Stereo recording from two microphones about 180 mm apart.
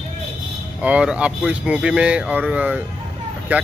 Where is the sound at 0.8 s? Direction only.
5° right (ahead or behind).